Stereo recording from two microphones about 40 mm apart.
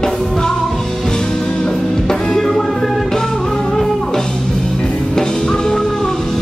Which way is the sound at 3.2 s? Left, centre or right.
Centre.